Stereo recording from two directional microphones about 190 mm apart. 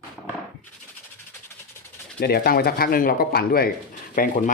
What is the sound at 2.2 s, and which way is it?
Speech, 55° left (ahead or behind).